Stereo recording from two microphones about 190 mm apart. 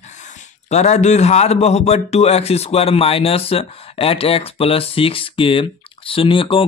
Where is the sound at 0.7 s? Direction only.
35° left (ahead or behind).